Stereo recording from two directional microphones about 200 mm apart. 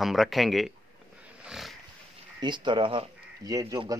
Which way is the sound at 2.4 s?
20° right (ahead or behind).